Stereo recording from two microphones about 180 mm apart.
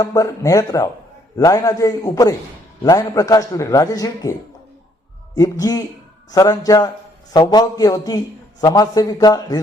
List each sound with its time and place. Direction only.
0.0 s a man's voice: 20° left (ahead or behind)